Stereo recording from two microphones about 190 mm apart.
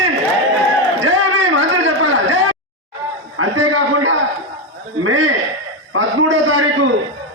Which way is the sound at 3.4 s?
90° right.